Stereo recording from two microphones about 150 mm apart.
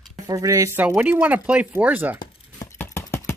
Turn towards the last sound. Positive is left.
turn(degrees=20)  # may be behind; listen again after turning